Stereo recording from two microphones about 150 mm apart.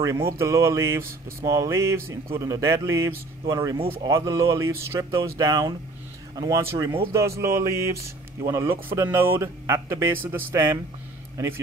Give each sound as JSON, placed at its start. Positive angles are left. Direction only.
{"t": 0.0, "sound": "a man's voice", "side_deg": -20}